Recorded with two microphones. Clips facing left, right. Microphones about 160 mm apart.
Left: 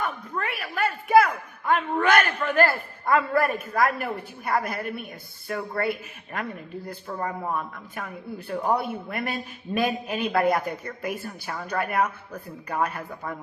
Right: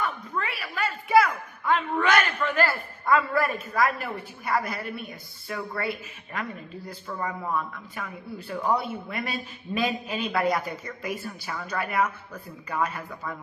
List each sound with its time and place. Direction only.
0.0 s a sound: 55° left (ahead or behind)
3.8 s a man's voice: 55° left (ahead or behind)
7.1 s a man's voice: 40° left (ahead or behind)
7.9 s a man's voice: 55° left (ahead or behind)